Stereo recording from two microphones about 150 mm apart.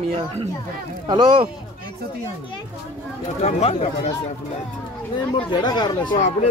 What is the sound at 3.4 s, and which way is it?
Speech, 45° left (ahead or behind).